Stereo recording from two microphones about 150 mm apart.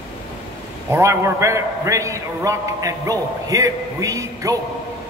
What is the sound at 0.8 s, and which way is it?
A man's voice, 15° right (ahead or behind).